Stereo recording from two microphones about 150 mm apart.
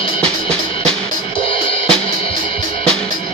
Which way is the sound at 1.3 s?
35° left (ahead or behind).